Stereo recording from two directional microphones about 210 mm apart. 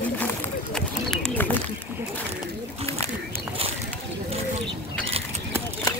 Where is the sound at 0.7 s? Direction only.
5° left (ahead or behind).